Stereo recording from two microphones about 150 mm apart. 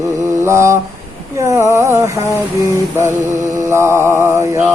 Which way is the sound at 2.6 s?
20° right (ahead or behind).